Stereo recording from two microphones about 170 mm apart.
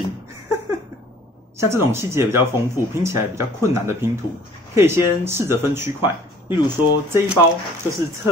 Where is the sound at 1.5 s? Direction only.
15° right (ahead or behind).